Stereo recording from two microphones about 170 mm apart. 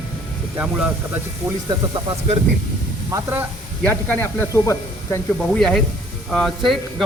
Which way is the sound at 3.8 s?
10° left (ahead or behind).